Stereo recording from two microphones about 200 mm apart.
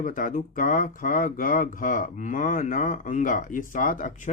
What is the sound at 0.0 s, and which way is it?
Speech, 45° left (ahead or behind).